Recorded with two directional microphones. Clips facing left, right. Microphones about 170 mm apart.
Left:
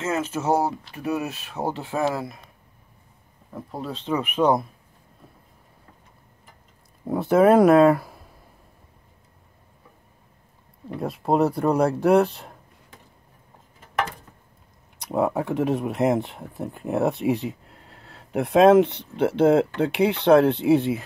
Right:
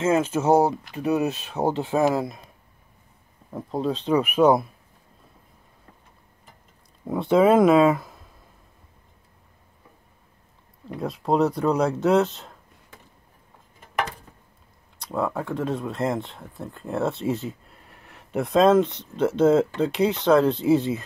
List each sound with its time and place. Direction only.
0.1 s speech: 15° right (ahead or behind)
3.7 s speech: 20° right (ahead or behind)
7.1 s speech: 10° left (ahead or behind)
11.0 s speech: centre (ahead or behind)
12.2 s speech: 15° left (ahead or behind)
15.0 s speech: 20° left (ahead or behind)
18.9 s speech: 65° left (ahead or behind)